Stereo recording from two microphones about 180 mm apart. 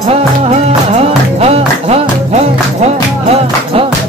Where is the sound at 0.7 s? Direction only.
35° right (ahead or behind).